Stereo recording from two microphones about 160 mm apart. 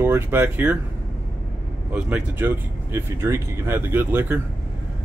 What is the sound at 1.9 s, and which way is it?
Speech, 10° right (ahead or behind).